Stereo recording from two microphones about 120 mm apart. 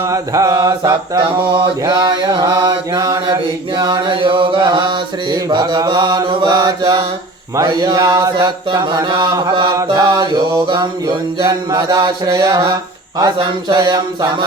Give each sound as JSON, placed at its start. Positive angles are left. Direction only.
{"t": 0.1, "sound": "mantra", "side_deg": -30}